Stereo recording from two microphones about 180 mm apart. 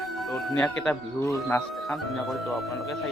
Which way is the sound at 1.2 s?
15° left (ahead or behind).